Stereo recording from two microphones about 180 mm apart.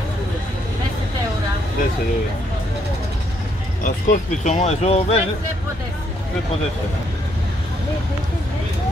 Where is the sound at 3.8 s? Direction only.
45° left (ahead or behind).